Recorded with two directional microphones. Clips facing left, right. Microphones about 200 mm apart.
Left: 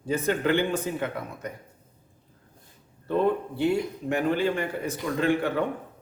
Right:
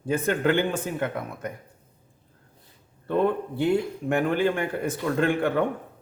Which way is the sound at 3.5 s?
55° right (ahead or behind).